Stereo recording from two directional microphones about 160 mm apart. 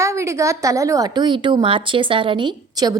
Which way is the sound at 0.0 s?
20° right (ahead or behind).